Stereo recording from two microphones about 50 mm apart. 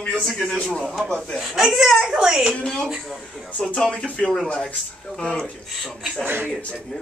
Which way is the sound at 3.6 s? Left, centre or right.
Centre.